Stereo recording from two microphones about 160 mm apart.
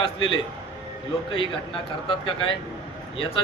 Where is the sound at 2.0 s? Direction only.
30° left (ahead or behind).